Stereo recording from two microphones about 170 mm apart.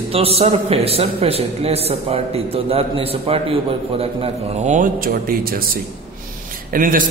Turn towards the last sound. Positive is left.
turn(degrees=-55)  # may be behind; listen again after turning